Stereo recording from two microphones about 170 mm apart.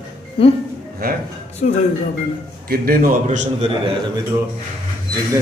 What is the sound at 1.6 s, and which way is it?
Speech, 45° left (ahead or behind).